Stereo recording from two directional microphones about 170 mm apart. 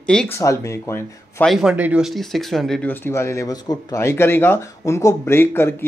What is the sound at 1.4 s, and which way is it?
Speech, 5° right (ahead or behind).